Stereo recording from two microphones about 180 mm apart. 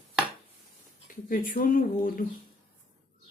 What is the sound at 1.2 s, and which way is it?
Speech, 50° left (ahead or behind).